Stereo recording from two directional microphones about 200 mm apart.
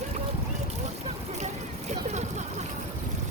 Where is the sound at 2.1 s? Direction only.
35° right (ahead or behind).